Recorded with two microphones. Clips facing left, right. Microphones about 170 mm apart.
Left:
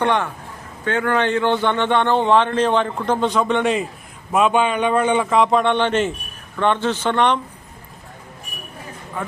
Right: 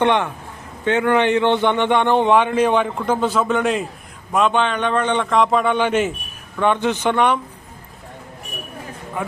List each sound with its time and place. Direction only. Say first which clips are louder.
0.0 s a man's voice: right 2 dB; 20° right (ahead or behind)
9.2 s a man's voice: right 2 dB; 15° right (ahead or behind)